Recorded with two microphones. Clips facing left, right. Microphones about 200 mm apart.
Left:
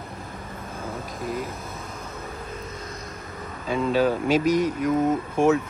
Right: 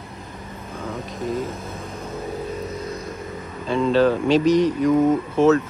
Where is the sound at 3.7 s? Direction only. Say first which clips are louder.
Right 4 dB; 10° left (ahead or behind).